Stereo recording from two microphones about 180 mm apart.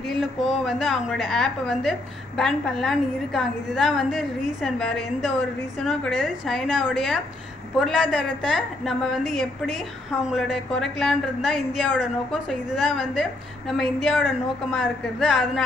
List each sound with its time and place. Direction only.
0.0 s a woman's voice: centre (ahead or behind)